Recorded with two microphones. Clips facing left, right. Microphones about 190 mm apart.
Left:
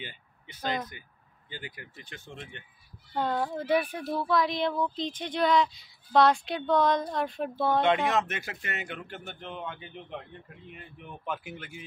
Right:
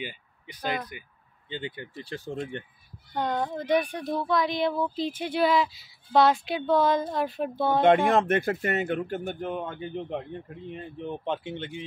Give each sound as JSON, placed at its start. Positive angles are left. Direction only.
{"t": 0.0, "sound": "speech", "side_deg": -15}
{"t": 1.5, "sound": "speech", "side_deg": -25}
{"t": 3.1, "sound": "speech", "side_deg": 5}
{"t": 8.1, "sound": "speech", "side_deg": -55}
{"t": 10.7, "sound": "speech", "side_deg": -30}